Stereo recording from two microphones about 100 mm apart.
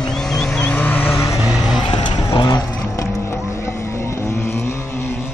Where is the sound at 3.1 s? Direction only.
30° left (ahead or behind).